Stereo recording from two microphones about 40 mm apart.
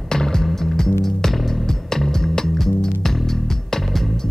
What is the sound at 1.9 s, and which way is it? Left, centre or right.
Music, centre.